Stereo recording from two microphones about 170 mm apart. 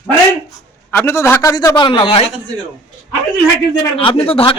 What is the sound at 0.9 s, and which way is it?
A man's voice, 10° left (ahead or behind).